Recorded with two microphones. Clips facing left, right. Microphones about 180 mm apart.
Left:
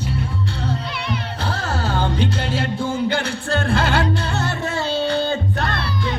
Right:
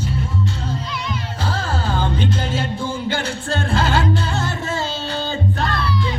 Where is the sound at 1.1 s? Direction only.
60° left (ahead or behind).